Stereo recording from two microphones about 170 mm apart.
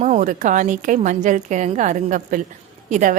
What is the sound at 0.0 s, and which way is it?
A woman's voice, 45° right (ahead or behind).